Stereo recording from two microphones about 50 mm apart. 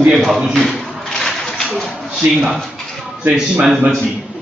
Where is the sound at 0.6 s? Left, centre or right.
Centre.